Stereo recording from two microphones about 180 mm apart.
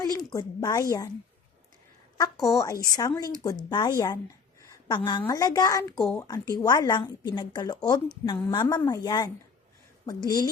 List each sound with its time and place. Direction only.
0.0 s speech: 20° left (ahead or behind)
2.5 s speech: 20° left (ahead or behind)